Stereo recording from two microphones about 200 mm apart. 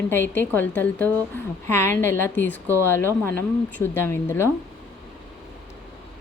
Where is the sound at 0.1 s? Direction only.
10° left (ahead or behind).